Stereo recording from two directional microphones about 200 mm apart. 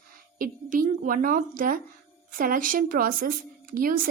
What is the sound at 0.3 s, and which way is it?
A woman's voice, 45° right (ahead or behind).